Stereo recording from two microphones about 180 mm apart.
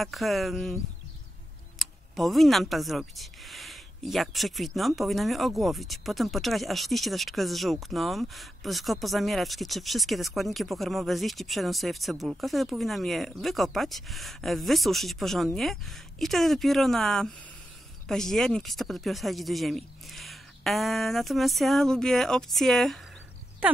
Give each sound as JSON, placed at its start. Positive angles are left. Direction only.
{"t": 0.0, "sound": "speech", "side_deg": 0}
{"t": 1.8, "sound": "speech", "side_deg": 0}